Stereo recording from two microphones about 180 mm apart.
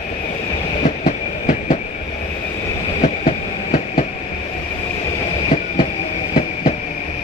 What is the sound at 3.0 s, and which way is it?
Train, 45° left (ahead or behind).